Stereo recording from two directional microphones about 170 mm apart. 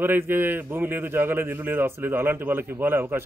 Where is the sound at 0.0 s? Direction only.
15° right (ahead or behind).